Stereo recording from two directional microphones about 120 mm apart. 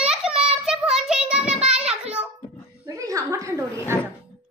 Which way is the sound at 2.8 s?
25° right (ahead or behind).